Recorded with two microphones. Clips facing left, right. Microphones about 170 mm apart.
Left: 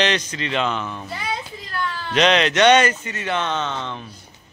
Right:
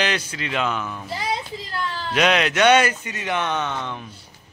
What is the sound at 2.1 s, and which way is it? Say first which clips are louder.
Speech: left 2 dB; 5° right (ahead or behind).